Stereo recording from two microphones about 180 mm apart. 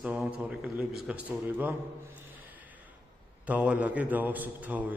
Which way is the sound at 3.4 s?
5° right (ahead or behind).